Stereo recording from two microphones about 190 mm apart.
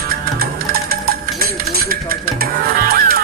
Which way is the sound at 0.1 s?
55° right (ahead or behind).